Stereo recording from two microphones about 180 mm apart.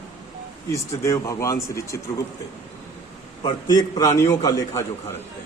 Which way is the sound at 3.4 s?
25° left (ahead or behind).